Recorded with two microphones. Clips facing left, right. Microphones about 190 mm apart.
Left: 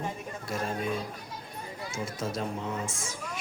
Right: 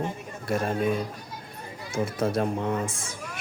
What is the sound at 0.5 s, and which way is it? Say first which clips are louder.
Speech: right 7 dB; 60° right (ahead or behind).